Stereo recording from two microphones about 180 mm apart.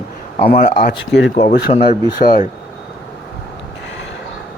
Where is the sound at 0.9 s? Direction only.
90° left.